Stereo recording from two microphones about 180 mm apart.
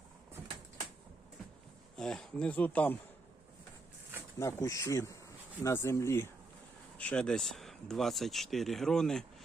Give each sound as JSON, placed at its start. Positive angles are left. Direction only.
{"t": 2.0, "sound": "speech", "side_deg": 5}
{"t": 4.4, "sound": "speech", "side_deg": 15}